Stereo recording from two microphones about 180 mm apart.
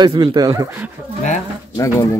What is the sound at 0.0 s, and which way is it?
Speech, 25° right (ahead or behind).